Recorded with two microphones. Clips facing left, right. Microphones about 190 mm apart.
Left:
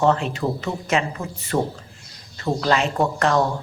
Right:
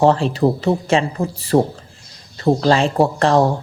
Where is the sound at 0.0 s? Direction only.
35° right (ahead or behind).